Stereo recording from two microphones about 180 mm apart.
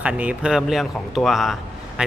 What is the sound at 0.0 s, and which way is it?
A man's voice, 5° right (ahead or behind).